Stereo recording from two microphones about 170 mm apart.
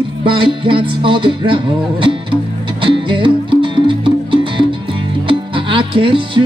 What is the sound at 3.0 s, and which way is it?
Music, 30° right (ahead or behind).